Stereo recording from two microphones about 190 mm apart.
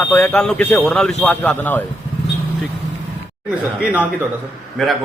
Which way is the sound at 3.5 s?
10° right (ahead or behind).